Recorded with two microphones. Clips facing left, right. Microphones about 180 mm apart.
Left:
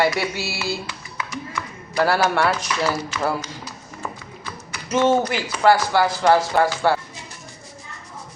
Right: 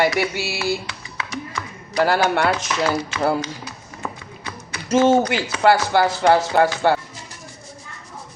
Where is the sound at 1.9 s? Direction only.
15° right (ahead or behind).